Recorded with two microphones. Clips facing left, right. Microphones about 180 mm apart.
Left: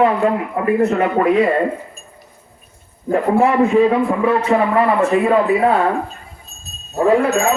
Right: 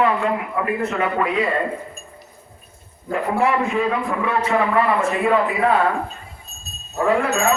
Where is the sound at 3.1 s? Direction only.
35° left (ahead or behind).